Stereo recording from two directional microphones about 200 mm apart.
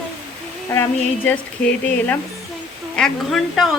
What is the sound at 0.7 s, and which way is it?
Speech, 10° left (ahead or behind).